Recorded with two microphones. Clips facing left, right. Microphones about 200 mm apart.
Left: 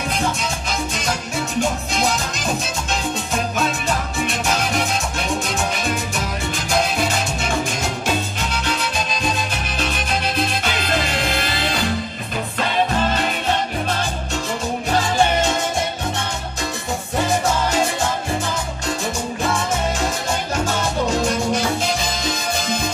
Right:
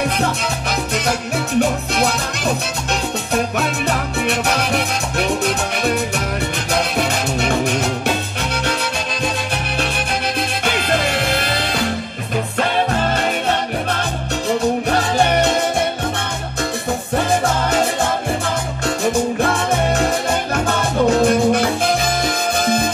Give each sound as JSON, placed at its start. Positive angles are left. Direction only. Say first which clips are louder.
{"t": 4.3, "sound": "music", "louder": "right 4 dB", "side_deg": -65}
{"t": 21.2, "sound": "music", "louder": "right 6 dB", "side_deg": -55}